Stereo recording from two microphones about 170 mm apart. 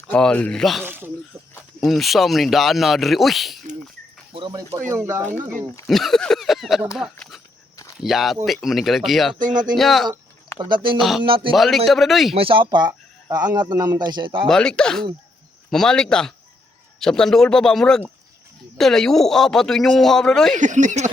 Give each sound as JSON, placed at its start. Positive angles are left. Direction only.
{"t": 0.1, "sound": "speech", "side_deg": 5}
{"t": 0.9, "sound": "speech", "side_deg": -10}
{"t": 1.8, "sound": "speech", "side_deg": 0}
{"t": 4.3, "sound": "speech", "side_deg": -30}
{"t": 5.9, "sound": "speech", "side_deg": 0}
{"t": 9.4, "sound": "speech", "side_deg": -50}
{"t": 9.7, "sound": "speech", "side_deg": 0}
{"t": 10.6, "sound": "speech", "side_deg": -30}
{"t": 10.9, "sound": "speech", "side_deg": 0}
{"t": 11.2, "sound": "speech", "side_deg": -30}
{"t": 11.5, "sound": "speech", "side_deg": 0}
{"t": 12.3, "sound": "speech", "side_deg": -35}
{"t": 14.4, "sound": "speech", "side_deg": 5}
{"t": 20.6, "sound": "speech", "side_deg": -45}